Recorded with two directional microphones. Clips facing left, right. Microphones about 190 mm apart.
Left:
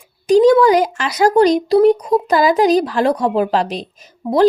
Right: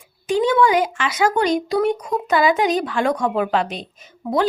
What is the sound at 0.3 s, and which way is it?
A woman's voice, 40° left (ahead or behind).